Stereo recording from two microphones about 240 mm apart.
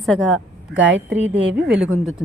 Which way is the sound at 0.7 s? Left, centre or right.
Right.